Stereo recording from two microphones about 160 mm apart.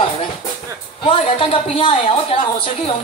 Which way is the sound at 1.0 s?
35° left (ahead or behind).